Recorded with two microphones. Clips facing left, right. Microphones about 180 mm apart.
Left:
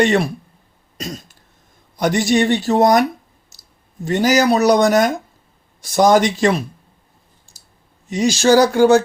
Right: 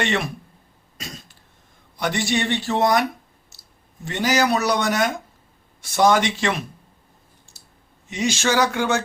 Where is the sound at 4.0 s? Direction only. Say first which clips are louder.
Left 6 dB; 40° left (ahead or behind).